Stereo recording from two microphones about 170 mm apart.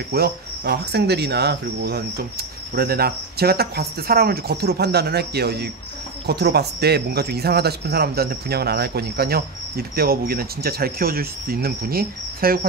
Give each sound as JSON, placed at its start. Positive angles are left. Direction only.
{"t": 0.1, "sound": "speech", "side_deg": -70}